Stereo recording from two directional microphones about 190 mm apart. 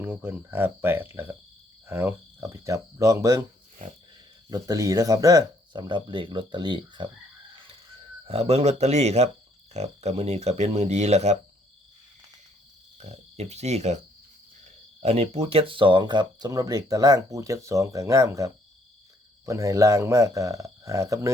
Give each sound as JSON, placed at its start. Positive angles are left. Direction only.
{"t": 0.0, "sound": "speech", "side_deg": -10}
{"t": 4.4, "sound": "speech", "side_deg": -20}
{"t": 8.3, "sound": "speech", "side_deg": -35}
{"t": 13.0, "sound": "speech", "side_deg": -35}